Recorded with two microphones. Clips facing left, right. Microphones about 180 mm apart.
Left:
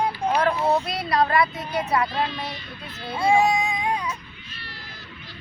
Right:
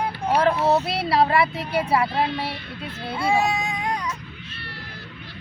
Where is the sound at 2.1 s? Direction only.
60° right (ahead or behind).